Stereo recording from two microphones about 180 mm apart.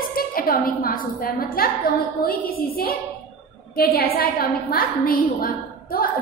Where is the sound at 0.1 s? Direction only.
55° left (ahead or behind).